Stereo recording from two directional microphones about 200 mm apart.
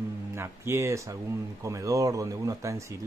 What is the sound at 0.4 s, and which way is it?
Speech, 15° right (ahead or behind).